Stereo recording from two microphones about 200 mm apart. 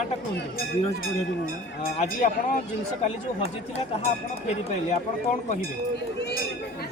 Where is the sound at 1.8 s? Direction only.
40° left (ahead or behind).